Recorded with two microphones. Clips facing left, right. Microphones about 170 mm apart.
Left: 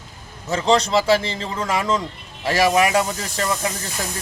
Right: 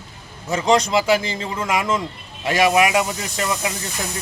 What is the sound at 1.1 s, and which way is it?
Speech, 30° left (ahead or behind).